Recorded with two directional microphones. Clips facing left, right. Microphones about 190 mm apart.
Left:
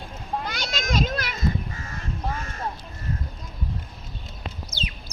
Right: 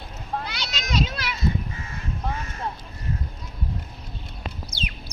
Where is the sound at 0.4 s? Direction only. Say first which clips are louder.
Left 4 dB; 50° left (ahead or behind).